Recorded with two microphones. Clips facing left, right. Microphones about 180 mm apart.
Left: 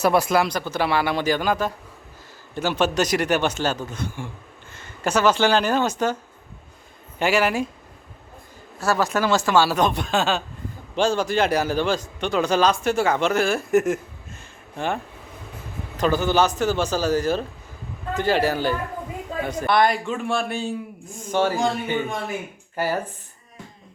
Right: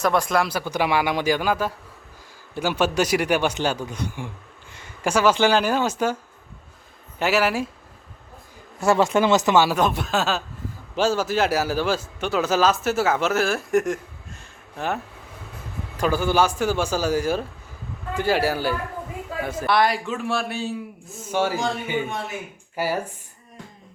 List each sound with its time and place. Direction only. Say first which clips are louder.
0.0 s speech: left 2 dB; 10° left (ahead or behind); by 6.1 s 10° right (ahead or behind)
7.2 s a man's voice: left 1 dB; 5° right (ahead or behind)
8.8 s speech: right 3 dB; 25° right (ahead or behind)
9.7 s a man's voice: left 1 dB; 5° right (ahead or behind)
22.7 s speech: left 1 dB; 10° right (ahead or behind)